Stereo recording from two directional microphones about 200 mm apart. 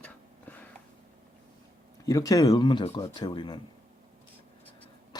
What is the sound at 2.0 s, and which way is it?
Speech, 15° left (ahead or behind).